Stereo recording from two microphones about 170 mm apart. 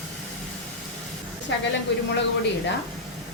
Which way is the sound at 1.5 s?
90° left.